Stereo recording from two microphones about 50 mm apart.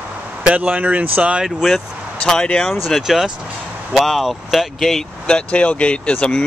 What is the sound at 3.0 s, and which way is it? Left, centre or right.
Speech, centre.